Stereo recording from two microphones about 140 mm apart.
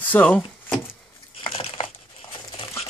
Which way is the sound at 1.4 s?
45° left (ahead or behind).